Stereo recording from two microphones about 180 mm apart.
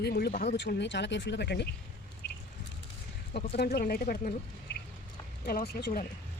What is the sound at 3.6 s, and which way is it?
Speech, 55° left (ahead or behind).